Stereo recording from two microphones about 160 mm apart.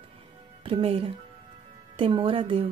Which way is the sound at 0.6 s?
35° right (ahead or behind).